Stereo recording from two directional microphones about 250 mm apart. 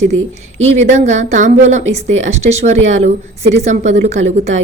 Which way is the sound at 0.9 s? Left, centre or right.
Right.